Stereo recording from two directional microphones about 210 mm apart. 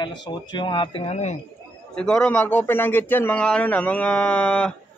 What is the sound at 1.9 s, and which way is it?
A man's voice, 5° left (ahead or behind).